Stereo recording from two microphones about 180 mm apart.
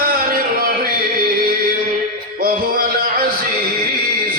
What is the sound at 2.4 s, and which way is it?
Music, 55° right (ahead or behind).